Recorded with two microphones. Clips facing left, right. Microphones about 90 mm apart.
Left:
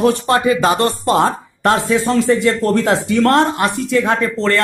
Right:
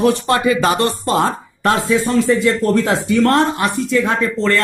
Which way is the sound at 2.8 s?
70° left (ahead or behind).